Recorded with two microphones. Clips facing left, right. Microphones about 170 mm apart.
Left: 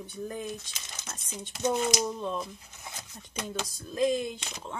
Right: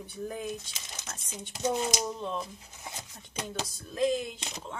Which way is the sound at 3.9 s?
Centre (ahead or behind).